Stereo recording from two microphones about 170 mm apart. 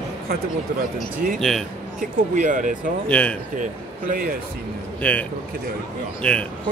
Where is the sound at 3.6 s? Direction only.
55° right (ahead or behind).